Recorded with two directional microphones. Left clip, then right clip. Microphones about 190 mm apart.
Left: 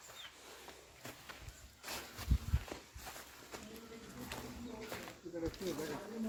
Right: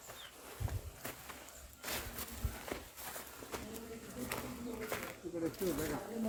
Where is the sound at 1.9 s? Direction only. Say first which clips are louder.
Right 3 dB; 15° right (ahead or behind).